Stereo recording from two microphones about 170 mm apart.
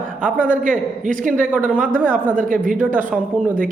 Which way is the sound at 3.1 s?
5° right (ahead or behind).